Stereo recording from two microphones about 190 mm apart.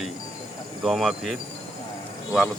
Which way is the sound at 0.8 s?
Centre (ahead or behind).